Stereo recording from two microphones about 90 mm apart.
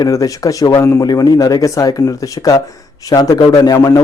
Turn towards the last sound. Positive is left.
turn(degrees=30)  # may be behind; listen again after turning